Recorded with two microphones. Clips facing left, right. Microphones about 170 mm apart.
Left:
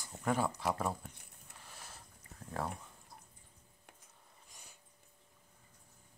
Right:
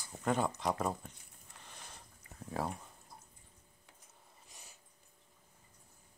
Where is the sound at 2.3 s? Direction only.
35° left (ahead or behind).